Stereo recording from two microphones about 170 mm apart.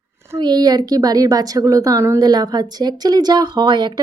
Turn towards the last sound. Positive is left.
turn(degrees=-25)  # may be behind; listen again after turning